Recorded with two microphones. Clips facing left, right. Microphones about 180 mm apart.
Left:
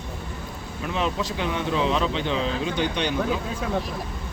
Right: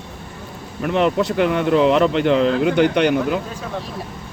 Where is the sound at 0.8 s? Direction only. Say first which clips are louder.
Right 9 dB; 60° right (ahead or behind).